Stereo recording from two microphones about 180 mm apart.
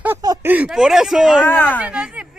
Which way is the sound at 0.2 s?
20° right (ahead or behind).